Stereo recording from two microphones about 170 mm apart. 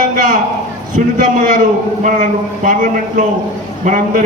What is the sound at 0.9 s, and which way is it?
A man's voice, 50° right (ahead or behind).